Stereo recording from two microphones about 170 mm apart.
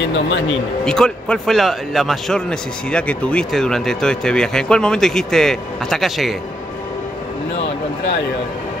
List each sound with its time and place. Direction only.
0.0 s speech: 90° left
0.8 s speech: 5° left (ahead or behind)